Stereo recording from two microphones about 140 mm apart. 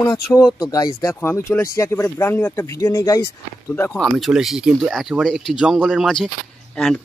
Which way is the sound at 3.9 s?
Centre (ahead or behind).